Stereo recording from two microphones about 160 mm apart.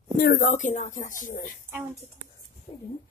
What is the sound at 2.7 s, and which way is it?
Speech, 40° left (ahead or behind).